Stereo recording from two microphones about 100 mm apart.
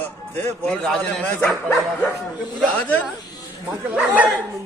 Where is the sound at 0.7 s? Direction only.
10° left (ahead or behind).